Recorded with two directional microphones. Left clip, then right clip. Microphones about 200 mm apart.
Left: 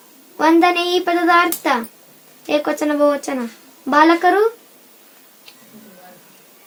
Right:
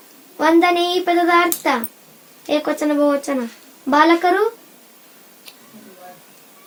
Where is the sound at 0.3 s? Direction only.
40° left (ahead or behind).